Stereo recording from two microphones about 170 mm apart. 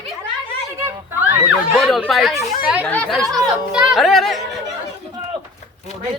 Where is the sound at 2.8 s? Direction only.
5° left (ahead or behind).